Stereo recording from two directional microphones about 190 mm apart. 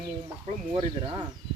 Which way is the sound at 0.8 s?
25° right (ahead or behind).